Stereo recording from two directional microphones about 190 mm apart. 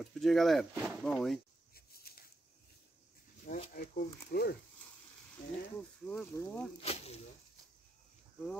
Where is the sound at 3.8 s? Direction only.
55° left (ahead or behind).